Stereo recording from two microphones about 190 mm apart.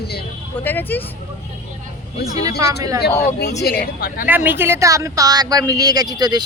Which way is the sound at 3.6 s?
55° left (ahead or behind).